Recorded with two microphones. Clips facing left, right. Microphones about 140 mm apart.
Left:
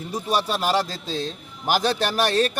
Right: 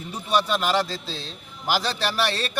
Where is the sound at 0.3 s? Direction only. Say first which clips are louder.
Right 1 dB; 40° left (ahead or behind).